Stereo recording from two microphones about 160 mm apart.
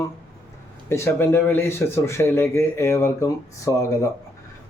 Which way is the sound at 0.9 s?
15° left (ahead or behind).